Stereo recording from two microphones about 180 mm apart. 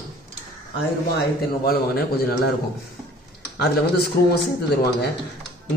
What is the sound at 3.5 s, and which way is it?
Speech, 65° left (ahead or behind).